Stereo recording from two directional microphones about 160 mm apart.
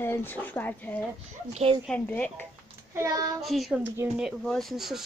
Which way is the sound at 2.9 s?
20° right (ahead or behind).